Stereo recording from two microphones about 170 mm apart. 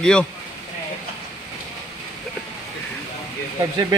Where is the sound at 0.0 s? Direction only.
5° left (ahead or behind).